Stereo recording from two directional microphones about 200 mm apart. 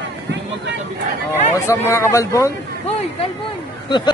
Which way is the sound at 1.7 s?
15° left (ahead or behind).